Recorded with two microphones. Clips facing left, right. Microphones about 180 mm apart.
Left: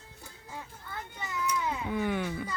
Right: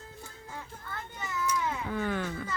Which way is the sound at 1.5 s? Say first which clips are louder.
Left 2 dB; 15° left (ahead or behind).